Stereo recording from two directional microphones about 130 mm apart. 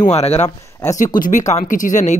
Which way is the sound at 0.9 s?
85° left.